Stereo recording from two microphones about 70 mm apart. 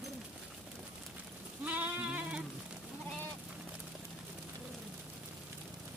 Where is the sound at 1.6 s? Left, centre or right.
Right.